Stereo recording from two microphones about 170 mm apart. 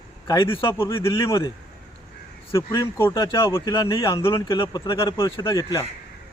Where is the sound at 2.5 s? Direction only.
20° left (ahead or behind).